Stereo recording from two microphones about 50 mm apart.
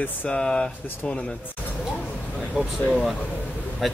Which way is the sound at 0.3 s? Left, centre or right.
Centre.